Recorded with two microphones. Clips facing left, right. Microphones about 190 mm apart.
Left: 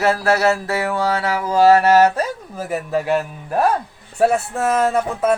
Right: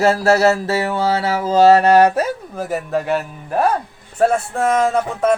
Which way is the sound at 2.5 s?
Centre (ahead or behind).